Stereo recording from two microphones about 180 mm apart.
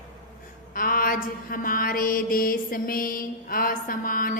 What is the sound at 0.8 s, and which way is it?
Mantra, 50° left (ahead or behind).